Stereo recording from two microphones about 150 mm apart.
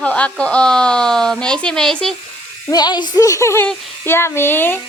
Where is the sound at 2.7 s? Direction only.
30° left (ahead or behind).